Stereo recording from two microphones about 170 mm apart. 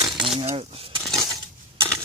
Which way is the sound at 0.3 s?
30° right (ahead or behind).